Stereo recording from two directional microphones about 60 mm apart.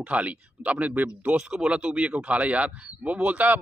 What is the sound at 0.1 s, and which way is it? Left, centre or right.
A man's voice, right.